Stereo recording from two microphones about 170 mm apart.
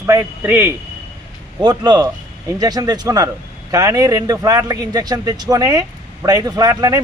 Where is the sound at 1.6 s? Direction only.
25° right (ahead or behind).